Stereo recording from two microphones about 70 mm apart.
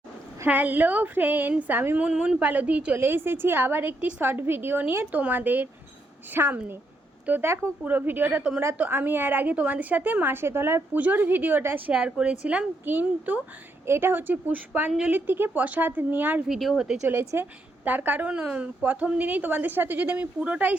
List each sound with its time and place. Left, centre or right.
0.4 s a woman's voice: right
3.0 s a woman's voice: right
13.8 s a woman's voice: right
14.8 s a woman's voice: centre
15.1 s a woman's voice: right
16.5 s speech: centre
17.1 s a woman's voice: right